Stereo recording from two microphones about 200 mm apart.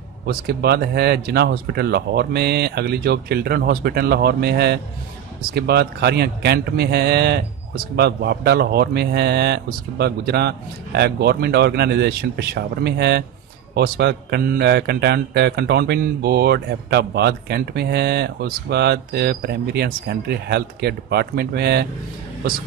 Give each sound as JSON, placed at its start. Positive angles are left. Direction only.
{"t": 0.3, "sound": "speech", "side_deg": -55}